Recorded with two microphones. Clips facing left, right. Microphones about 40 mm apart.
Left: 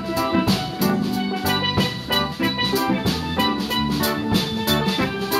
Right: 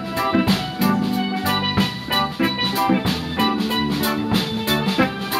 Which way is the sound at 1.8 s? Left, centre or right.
Centre.